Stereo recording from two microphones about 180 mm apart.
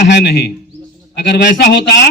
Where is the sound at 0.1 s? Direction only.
65° left (ahead or behind).